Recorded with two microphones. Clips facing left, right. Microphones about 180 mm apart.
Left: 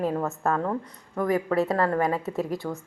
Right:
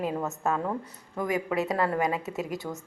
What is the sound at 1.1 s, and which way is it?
A woman's voice, 15° right (ahead or behind).